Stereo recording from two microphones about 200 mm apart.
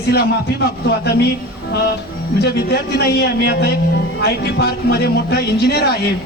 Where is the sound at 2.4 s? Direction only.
55° left (ahead or behind).